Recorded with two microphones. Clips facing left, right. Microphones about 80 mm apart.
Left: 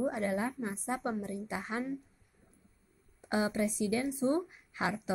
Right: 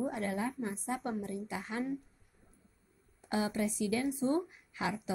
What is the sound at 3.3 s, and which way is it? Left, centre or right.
A woman's voice, left.